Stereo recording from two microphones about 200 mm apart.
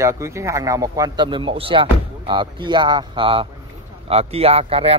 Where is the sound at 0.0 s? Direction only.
15° right (ahead or behind).